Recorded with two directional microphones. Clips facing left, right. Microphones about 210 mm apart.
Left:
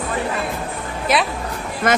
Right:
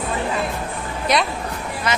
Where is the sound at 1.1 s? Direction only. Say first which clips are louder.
Left 1 dB; centre (ahead or behind).